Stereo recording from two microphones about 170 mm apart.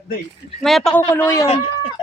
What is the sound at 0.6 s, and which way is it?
Speech, centre (ahead or behind).